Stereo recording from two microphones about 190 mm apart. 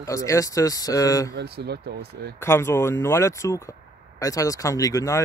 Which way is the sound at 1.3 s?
60° right (ahead or behind).